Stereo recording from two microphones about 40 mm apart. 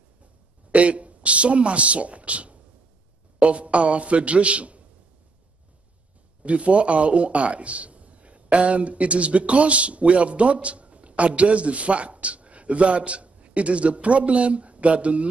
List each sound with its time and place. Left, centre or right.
0.7 s a man's voice: right
6.4 s a man's voice: right